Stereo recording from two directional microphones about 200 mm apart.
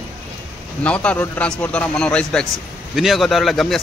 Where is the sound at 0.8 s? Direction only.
5° left (ahead or behind).